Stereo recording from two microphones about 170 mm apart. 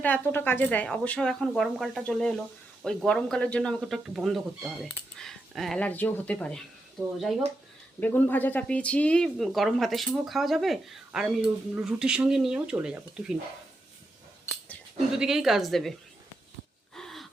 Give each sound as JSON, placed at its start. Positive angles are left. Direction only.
{"t": 0.0, "sound": "speech", "side_deg": 10}
{"t": 8.0, "sound": "speech", "side_deg": 10}
{"t": 15.1, "sound": "speech", "side_deg": -5}
{"t": 16.9, "sound": "gasp", "side_deg": 0}